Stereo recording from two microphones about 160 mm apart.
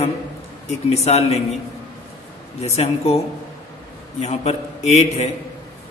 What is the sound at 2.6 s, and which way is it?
Mantra, 40° left (ahead or behind).